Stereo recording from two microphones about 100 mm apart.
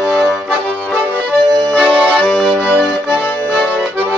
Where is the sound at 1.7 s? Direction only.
Centre (ahead or behind).